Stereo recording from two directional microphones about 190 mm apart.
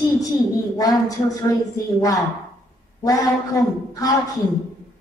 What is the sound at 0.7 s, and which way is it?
Speech, 20° left (ahead or behind).